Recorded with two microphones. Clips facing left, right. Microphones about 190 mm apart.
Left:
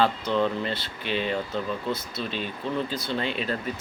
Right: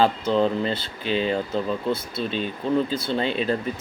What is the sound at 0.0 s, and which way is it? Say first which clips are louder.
Speech: right 3 dB; 35° right (ahead or behind).